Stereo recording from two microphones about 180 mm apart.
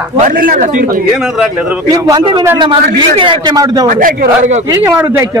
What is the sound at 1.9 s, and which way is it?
A man's voice, 20° right (ahead or behind).